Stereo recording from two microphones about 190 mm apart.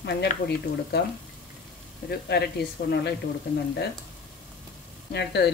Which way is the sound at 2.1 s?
60° left (ahead or behind).